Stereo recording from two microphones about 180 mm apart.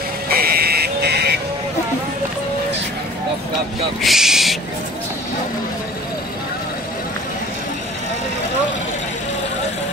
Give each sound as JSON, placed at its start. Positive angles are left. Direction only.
{"t": 0.3, "sound": "fire alarm", "side_deg": -55}
{"t": 4.0, "sound": "speech", "side_deg": 0}